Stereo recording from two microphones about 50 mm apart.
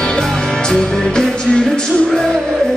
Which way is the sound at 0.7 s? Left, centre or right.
Centre.